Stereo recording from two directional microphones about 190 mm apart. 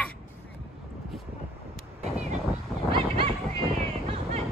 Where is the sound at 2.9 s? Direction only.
30° right (ahead or behind).